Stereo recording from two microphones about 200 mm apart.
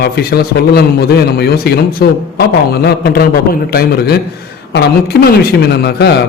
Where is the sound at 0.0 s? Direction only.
50° left (ahead or behind).